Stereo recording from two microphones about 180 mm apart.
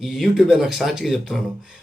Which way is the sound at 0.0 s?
Centre (ahead or behind).